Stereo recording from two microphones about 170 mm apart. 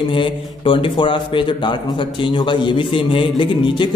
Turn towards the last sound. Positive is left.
turn(degrees=30)  # may be behind; listen again after turning